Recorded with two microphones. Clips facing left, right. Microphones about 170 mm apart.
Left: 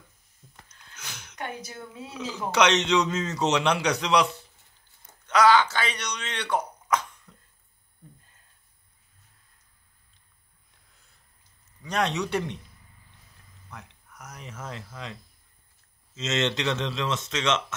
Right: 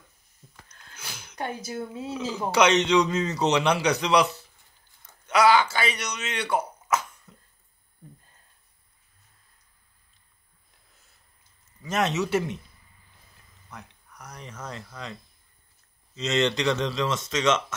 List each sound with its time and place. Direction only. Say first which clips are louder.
0.9 s a sound: right 1 dB; 5° right (ahead or behind)
1.7 s speech: right 8 dB; 30° right (ahead or behind)
2.1 s a man's voice: right 1 dB; 5° right (ahead or behind)
11.8 s a man's voice: right 1 dB; 5° right (ahead or behind)
13.7 s speech: right 1 dB; centre (ahead or behind)
16.2 s a man's voice: right 3 dB; centre (ahead or behind)